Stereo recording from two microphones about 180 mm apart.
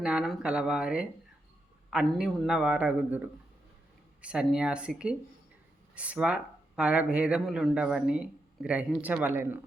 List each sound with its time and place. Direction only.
0.0 s a man's voice: 5° right (ahead or behind)